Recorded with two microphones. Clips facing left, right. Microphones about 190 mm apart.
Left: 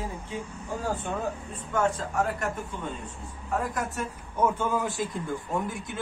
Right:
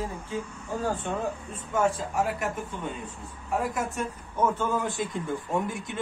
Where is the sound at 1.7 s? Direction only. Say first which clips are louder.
Right 1 dB; 10° right (ahead or behind).